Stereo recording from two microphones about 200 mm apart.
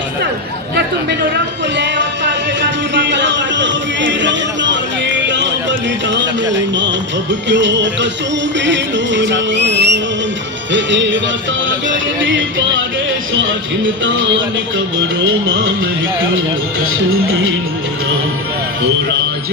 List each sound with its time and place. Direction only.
1.7 s music: 60° right (ahead or behind)